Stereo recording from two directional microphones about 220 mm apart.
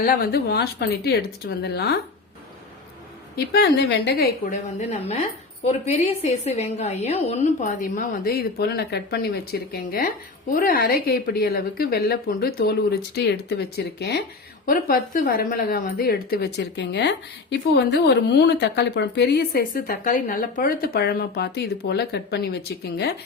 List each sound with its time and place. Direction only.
0.0 s a woman's voice: 45° left (ahead or behind)
3.3 s a woman's voice: 45° left (ahead or behind)